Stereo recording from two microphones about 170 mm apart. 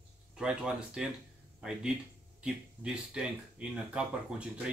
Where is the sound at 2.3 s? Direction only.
5° right (ahead or behind).